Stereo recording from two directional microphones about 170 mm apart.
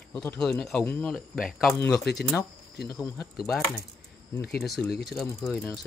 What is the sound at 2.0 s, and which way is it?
Speech, 75° left (ahead or behind).